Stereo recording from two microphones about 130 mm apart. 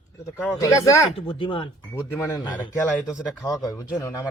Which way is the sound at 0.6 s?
25° left (ahead or behind).